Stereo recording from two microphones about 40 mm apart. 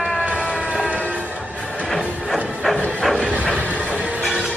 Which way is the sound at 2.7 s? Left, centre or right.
Left.